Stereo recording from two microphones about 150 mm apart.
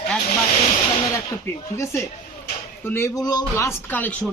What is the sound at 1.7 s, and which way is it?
Speech, 20° left (ahead or behind).